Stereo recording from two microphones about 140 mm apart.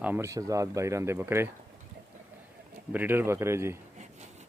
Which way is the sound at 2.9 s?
15° right (ahead or behind).